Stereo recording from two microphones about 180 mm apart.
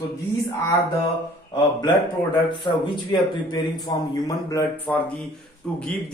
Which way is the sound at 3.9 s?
25° left (ahead or behind).